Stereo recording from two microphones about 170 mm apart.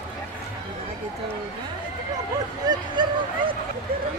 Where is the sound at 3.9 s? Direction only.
60° right (ahead or behind).